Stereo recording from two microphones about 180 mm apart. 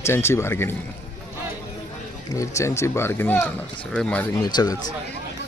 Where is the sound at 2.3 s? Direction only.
15° left (ahead or behind).